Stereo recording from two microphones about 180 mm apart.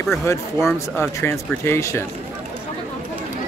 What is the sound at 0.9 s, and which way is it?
Speech, 10° left (ahead or behind).